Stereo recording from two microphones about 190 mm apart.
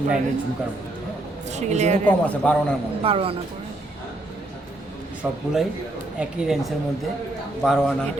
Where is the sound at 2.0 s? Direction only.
5° left (ahead or behind).